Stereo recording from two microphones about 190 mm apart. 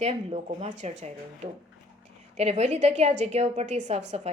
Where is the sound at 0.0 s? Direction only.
35° right (ahead or behind).